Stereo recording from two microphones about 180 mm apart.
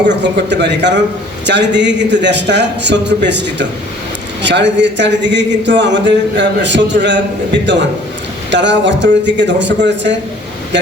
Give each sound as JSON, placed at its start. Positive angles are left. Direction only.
{"t": 0.2, "sound": "a man's voice", "side_deg": -75}